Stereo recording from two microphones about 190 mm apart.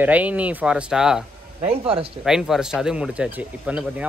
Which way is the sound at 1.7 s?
30° right (ahead or behind).